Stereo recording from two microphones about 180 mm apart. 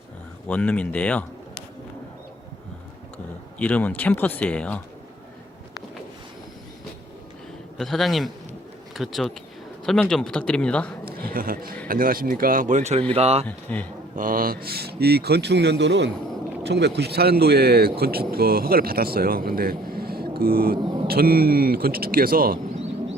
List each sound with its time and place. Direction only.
0.4 s speech: 5° left (ahead or behind)
3.6 s speech: 10° left (ahead or behind)
7.8 s a man's voice: centre (ahead or behind)
11.0 s a man's voice: 55° right (ahead or behind); by 13.5 s 35° right (ahead or behind)
13.5 s speech: 10° left (ahead or behind)
14.2 s speech: 50° right (ahead or behind)